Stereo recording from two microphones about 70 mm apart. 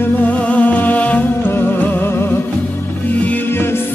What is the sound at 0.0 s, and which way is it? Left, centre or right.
Music, left.